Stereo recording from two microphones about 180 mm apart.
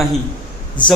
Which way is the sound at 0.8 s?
25° left (ahead or behind).